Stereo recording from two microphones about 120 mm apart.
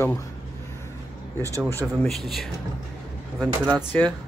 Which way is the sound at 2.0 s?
Centre (ahead or behind).